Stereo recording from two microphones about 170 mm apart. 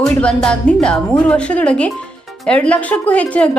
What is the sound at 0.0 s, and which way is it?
A woman's voice, 5° left (ahead or behind).